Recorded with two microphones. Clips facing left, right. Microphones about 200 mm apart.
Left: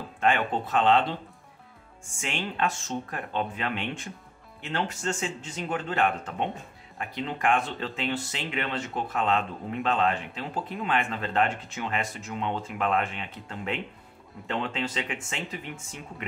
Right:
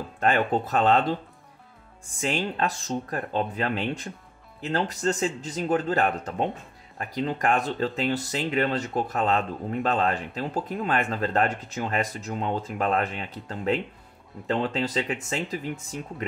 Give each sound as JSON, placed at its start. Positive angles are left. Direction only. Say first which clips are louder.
{"t": 0.2, "sound": "speech", "louder": "right 2 dB", "side_deg": -40}
{"t": 2.1, "sound": "speech", "louder": "right 4 dB", "side_deg": -35}